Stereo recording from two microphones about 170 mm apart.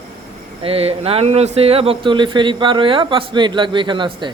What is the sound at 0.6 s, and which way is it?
Speech, 35° right (ahead or behind).